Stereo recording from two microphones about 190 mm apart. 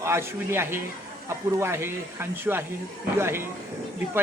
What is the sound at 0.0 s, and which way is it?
Speech, 15° right (ahead or behind).